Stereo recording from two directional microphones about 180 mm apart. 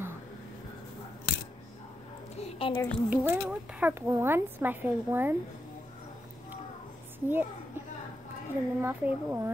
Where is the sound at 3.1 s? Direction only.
10° right (ahead or behind).